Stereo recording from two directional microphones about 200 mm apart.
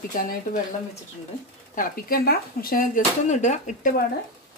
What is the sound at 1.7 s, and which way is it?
Speech, 45° left (ahead or behind).